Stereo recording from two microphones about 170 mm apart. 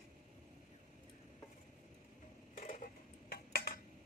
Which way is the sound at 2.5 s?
50° left (ahead or behind).